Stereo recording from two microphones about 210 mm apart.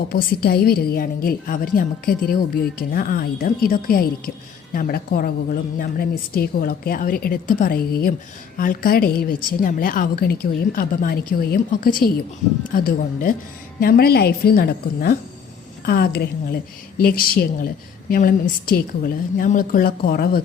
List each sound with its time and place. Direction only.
0.4 s a woman's voice: 45° left (ahead or behind)